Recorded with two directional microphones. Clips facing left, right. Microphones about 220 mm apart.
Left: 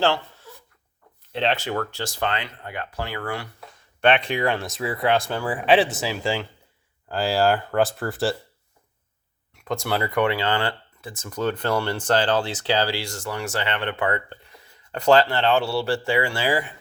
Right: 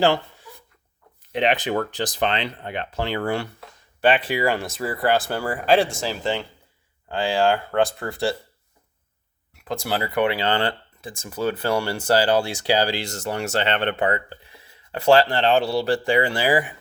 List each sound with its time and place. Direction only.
0.0 s a sound: 15° right (ahead or behind)
1.3 s speech: 15° right (ahead or behind)
4.0 s speech: 5° right (ahead or behind)
9.6 s speech: 5° right (ahead or behind)
10.4 s speech: 20° right (ahead or behind)
14.9 s speech: 10° right (ahead or behind)